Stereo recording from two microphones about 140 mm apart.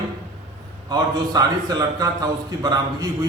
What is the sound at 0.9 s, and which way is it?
A man's voice, 30° right (ahead or behind).